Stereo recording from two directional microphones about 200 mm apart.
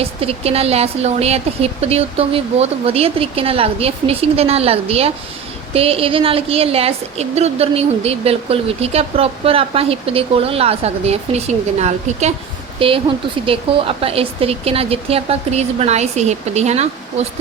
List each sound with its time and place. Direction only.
0.0 s a woman's voice: 30° right (ahead or behind)